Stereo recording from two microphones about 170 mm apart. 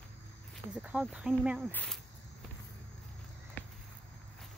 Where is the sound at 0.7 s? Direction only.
5° right (ahead or behind).